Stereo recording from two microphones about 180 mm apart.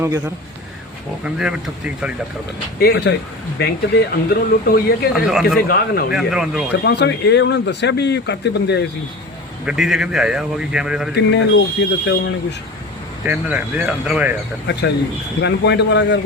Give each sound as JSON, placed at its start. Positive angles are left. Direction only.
{"t": 1.2, "sound": "speech", "side_deg": -5}
{"t": 2.8, "sound": "speech", "side_deg": 70}
{"t": 5.3, "sound": "speech", "side_deg": 0}
{"t": 5.6, "sound": "speech", "side_deg": 60}
{"t": 6.1, "sound": "speech", "side_deg": -5}
{"t": 6.8, "sound": "speech", "side_deg": 70}
{"t": 9.6, "sound": "speech", "side_deg": -5}
{"t": 11.1, "sound": "speech", "side_deg": 70}
{"t": 13.2, "sound": "speech", "side_deg": -10}
{"t": 14.7, "sound": "speech", "side_deg": 70}